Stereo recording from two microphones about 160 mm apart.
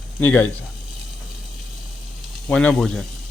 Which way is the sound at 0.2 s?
10° left (ahead or behind).